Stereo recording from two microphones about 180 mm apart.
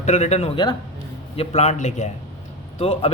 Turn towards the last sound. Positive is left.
turn(degrees=30)  # may be behind; listen again after turning